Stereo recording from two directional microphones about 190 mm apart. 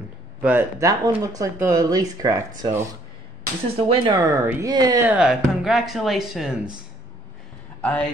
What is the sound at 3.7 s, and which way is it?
Speech, 30° right (ahead or behind).